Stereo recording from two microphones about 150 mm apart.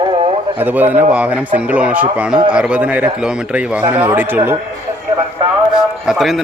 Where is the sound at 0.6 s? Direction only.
10° right (ahead or behind).